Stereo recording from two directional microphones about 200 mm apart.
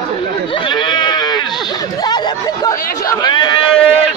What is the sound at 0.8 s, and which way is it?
Sheep, 20° left (ahead or behind).